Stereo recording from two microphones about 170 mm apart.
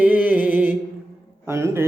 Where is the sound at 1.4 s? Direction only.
15° right (ahead or behind).